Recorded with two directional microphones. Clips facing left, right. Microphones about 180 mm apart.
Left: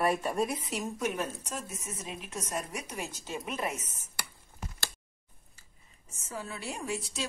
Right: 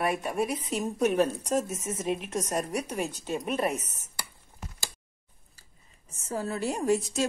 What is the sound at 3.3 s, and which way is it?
Speech, 35° right (ahead or behind).